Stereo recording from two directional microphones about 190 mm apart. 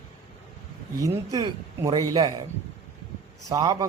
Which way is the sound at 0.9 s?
20° right (ahead or behind).